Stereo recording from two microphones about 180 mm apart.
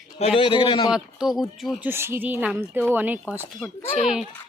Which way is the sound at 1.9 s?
15° right (ahead or behind).